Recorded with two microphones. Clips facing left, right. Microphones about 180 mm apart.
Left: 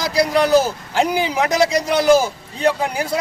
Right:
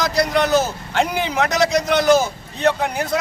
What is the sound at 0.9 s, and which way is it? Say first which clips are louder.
Speech: left 1 dB; 10° left (ahead or behind).